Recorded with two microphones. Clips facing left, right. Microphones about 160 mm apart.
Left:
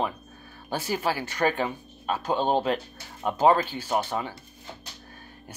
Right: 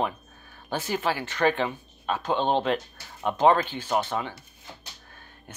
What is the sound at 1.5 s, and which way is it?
Speech, 40° left (ahead or behind).